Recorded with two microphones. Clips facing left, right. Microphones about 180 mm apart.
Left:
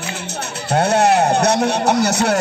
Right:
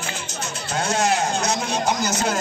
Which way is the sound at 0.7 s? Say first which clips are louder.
Left 8 dB; 65° left (ahead or behind).